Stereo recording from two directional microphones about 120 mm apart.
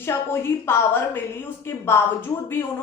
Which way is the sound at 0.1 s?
20° left (ahead or behind).